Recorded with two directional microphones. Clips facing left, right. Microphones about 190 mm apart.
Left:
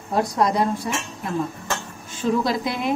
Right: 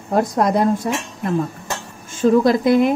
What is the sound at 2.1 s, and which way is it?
Speech, 50° right (ahead or behind).